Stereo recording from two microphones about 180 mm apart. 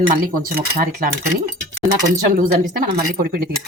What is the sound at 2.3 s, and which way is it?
Speech, 50° right (ahead or behind).